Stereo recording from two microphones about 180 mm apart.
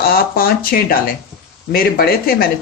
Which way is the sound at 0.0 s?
55° left (ahead or behind).